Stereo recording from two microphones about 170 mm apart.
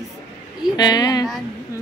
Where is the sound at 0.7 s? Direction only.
25° left (ahead or behind).